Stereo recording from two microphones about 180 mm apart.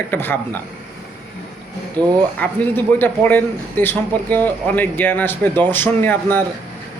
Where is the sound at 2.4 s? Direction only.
10° left (ahead or behind).